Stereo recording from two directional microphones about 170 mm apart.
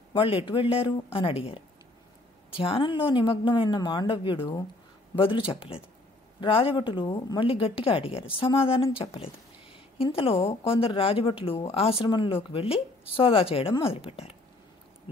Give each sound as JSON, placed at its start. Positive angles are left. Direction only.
{"t": 0.1, "sound": "a woman's voice", "side_deg": 30}